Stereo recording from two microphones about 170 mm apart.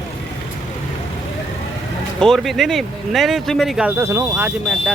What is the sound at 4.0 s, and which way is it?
Speech, 15° right (ahead or behind).